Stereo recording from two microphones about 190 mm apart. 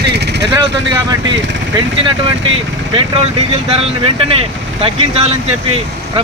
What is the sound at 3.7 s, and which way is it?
Speech, 30° right (ahead or behind).